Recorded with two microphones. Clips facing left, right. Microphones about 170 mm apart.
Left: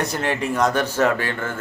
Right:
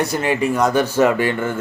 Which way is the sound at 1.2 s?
15° right (ahead or behind).